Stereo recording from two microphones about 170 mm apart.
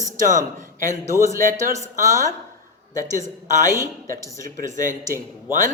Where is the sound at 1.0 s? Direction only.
20° right (ahead or behind).